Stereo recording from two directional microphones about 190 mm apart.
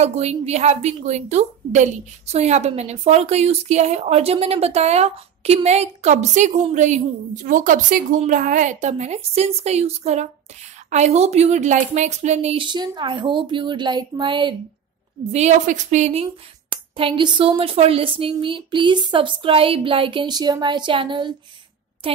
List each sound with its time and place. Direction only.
0.0 s a woman's voice: 35° right (ahead or behind)
15.3 s a woman's voice: 40° right (ahead or behind)